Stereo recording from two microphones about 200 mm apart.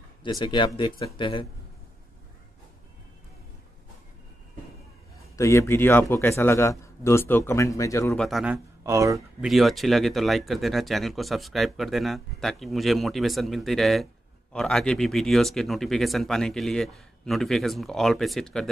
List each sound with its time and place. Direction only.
0.2 s speech: 25° left (ahead or behind)
5.3 s a man's voice: 15° left (ahead or behind)
8.2 s speech: centre (ahead or behind)
8.8 s speech: 15° right (ahead or behind)
9.4 s speech: centre (ahead or behind)